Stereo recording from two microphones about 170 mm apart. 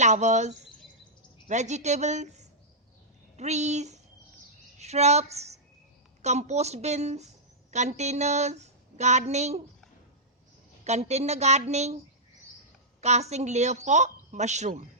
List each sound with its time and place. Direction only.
0.0 s a woman's voice: 45° right (ahead or behind)
10.8 s a woman's voice: 40° right (ahead or behind)
13.0 s a woman's voice: 40° right (ahead or behind)